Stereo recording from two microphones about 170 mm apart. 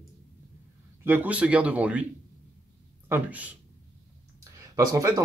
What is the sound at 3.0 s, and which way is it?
Speech, 10° right (ahead or behind).